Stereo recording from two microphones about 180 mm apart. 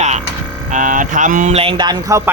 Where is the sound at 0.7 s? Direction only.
45° right (ahead or behind).